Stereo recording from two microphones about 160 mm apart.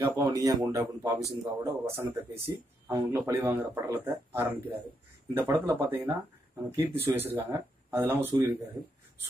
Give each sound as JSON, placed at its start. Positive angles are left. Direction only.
{"t": 0.0, "sound": "speech", "side_deg": -20}